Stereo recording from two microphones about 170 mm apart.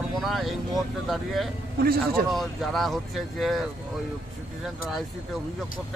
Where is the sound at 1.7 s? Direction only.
60° right (ahead or behind).